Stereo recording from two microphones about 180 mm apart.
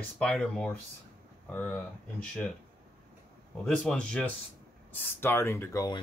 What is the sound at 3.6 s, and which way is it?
Speech, 5° left (ahead or behind).